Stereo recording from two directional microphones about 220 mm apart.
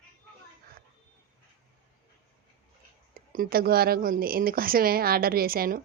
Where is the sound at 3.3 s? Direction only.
40° right (ahead or behind).